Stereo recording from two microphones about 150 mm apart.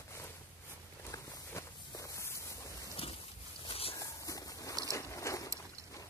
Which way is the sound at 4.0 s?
20° left (ahead or behind).